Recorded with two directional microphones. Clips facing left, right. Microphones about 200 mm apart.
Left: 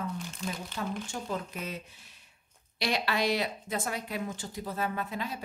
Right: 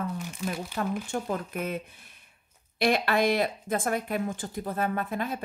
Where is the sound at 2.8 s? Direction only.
55° right (ahead or behind).